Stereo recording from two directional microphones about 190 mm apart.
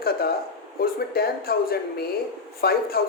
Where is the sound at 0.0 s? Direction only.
55° left (ahead or behind).